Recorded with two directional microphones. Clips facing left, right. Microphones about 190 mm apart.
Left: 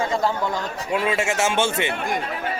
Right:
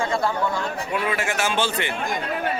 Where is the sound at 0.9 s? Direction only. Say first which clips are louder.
Left 4 dB; 25° left (ahead or behind).